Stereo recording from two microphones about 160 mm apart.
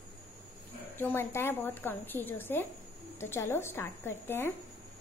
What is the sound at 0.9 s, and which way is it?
A woman's voice, 15° left (ahead or behind).